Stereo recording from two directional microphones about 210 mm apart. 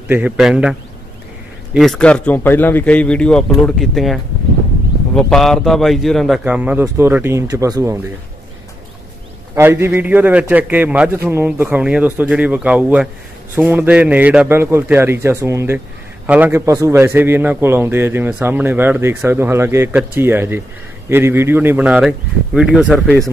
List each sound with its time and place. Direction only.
0.1 s a man's voice: 5° right (ahead or behind)
9.6 s a man's voice: 10° right (ahead or behind)